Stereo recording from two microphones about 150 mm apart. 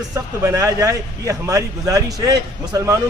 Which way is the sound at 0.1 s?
20° right (ahead or behind).